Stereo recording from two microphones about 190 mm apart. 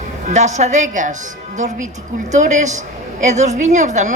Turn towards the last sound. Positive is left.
turn(degrees=-40)  # may be behind; listen again after turning